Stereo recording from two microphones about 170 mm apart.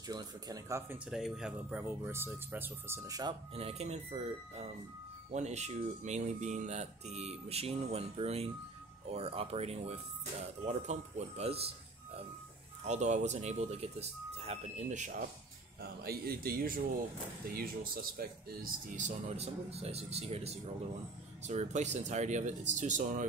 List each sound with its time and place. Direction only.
0.1 s speech: 25° right (ahead or behind)
1.1 s speech: centre (ahead or behind); by 3.3 s 20° right (ahead or behind)
3.5 s speech: 35° right (ahead or behind)
12.8 s speech: 45° right (ahead or behind)
15.8 s a man's voice: 65° right (ahead or behind)
18.6 s speech: 45° right (ahead or behind)